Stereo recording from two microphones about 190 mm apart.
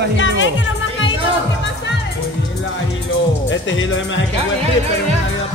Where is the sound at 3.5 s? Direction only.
80° left.